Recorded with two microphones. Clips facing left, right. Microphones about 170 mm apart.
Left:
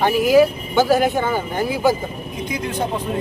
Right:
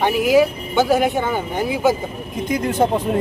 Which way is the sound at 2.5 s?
50° right (ahead or behind).